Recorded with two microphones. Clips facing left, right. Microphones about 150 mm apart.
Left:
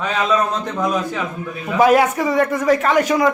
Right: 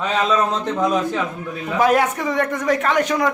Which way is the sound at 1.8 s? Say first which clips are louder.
Left 4 dB; 5° left (ahead or behind).